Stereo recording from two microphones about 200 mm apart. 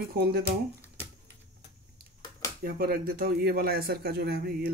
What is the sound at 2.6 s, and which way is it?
A man's voice, 50° right (ahead or behind).